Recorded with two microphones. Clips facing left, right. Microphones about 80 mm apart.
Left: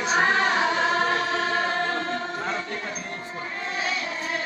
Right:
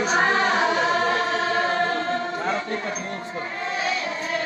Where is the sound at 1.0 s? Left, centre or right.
Right.